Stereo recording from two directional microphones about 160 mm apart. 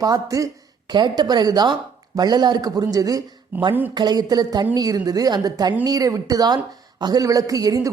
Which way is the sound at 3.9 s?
25° right (ahead or behind).